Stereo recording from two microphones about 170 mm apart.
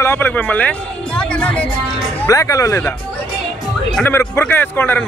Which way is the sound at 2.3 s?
20° left (ahead or behind).